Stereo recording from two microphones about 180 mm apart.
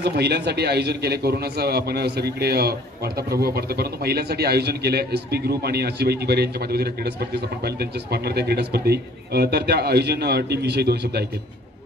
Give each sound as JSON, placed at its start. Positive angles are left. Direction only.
{"t": 0.0, "sound": "a man's voice", "side_deg": -65}